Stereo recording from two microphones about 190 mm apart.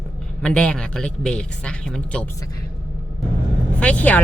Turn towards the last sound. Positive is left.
turn(degrees=5)  # may be behind; listen again after turning